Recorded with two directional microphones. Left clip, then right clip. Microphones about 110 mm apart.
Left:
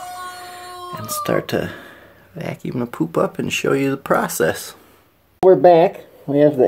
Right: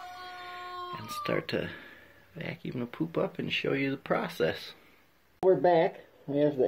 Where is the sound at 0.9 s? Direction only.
20° left (ahead or behind).